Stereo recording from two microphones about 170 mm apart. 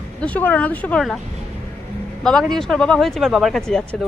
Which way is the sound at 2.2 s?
Centre (ahead or behind).